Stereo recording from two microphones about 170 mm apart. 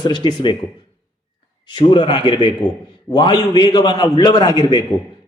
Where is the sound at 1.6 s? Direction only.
25° left (ahead or behind).